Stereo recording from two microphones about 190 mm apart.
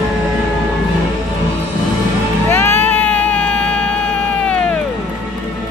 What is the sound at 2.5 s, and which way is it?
Music, 10° left (ahead or behind).